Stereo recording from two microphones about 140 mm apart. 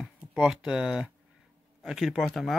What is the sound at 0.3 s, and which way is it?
Speech, 5° right (ahead or behind).